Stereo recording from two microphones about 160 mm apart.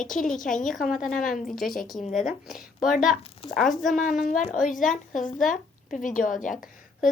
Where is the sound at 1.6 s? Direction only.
Centre (ahead or behind).